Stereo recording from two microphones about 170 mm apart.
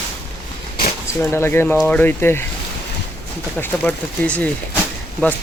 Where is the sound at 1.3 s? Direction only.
15° left (ahead or behind).